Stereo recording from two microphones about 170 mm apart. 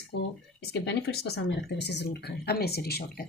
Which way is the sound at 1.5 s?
80° left.